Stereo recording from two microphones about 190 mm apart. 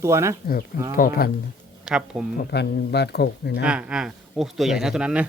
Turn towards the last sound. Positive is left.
turn(degrees=-5)  # may be behind; listen again after turning